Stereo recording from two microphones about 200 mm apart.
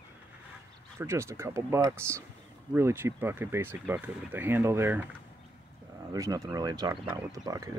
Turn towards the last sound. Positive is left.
turn(degrees=-15)  # may be behind; listen again after turning